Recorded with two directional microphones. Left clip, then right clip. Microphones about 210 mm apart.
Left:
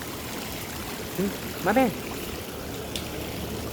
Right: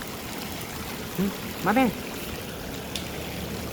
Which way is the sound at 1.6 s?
40° right (ahead or behind).